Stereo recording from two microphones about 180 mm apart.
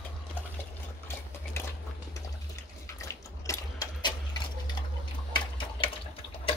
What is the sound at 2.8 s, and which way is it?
Water, 15° left (ahead or behind).